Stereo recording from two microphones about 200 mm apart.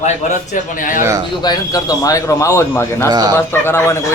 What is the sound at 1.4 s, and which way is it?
A man's voice, 20° left (ahead or behind).